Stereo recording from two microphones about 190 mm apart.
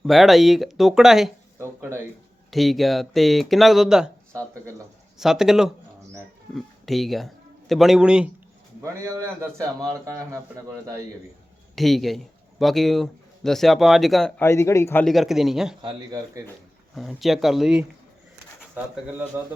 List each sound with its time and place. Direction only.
0.0 s a man's voice: centre (ahead or behind)
1.5 s a sound: 15° right (ahead or behind)
2.5 s a man's voice: centre (ahead or behind)
4.3 s speech: 15° right (ahead or behind)
5.1 s a man's voice: centre (ahead or behind)
8.8 s a man's voice: 15° right (ahead or behind)
11.7 s a man's voice: centre (ahead or behind)
15.0 s a man's voice: centre (ahead or behind)
15.8 s speech: 25° right (ahead or behind)
16.9 s a man's voice: centre (ahead or behind)